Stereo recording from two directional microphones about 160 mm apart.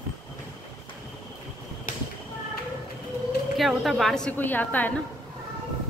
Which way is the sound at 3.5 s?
Centre (ahead or behind).